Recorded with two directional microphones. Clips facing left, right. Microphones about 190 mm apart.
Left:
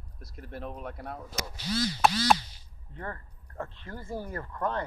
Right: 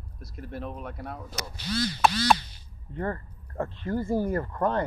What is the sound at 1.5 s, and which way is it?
Speech, 60° right (ahead or behind).